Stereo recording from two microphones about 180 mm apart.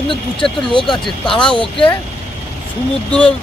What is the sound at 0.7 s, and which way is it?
Speech, 25° left (ahead or behind).